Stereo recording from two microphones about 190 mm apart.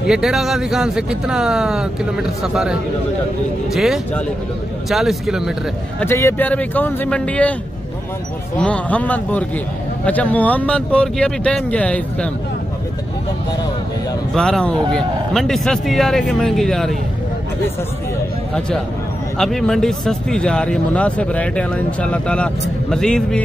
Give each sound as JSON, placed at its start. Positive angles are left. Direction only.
{"t": 0.0, "sound": "speech", "side_deg": -5}
{"t": 5.9, "sound": "speech", "side_deg": 15}
{"t": 8.5, "sound": "speech", "side_deg": 5}
{"t": 14.3, "sound": "speech", "side_deg": 5}
{"t": 19.3, "sound": "speech", "side_deg": 5}